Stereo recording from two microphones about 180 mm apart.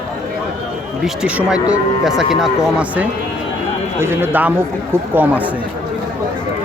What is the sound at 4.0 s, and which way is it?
Speech, 15° right (ahead or behind).